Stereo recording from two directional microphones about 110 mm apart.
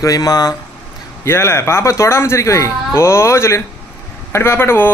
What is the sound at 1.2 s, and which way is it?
Speech, 25° left (ahead or behind).